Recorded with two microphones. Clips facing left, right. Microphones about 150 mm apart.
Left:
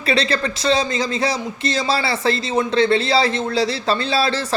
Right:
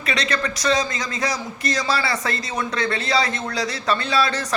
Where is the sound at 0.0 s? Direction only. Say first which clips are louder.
Left 5 dB; 30° left (ahead or behind).